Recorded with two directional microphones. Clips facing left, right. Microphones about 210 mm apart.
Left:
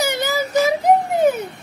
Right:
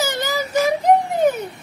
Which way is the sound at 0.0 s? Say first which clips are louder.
Left 2 dB; 10° left (ahead or behind).